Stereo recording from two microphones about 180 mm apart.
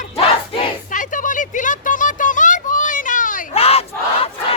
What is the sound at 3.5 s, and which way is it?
Battle cry, 35° left (ahead or behind).